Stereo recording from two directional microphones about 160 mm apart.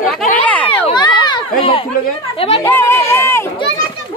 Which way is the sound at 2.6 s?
15° left (ahead or behind).